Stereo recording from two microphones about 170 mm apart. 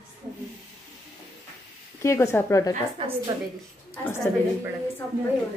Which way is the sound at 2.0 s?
15° left (ahead or behind).